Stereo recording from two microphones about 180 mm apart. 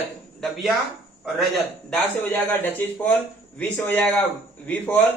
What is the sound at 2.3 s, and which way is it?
Speech, 10° left (ahead or behind).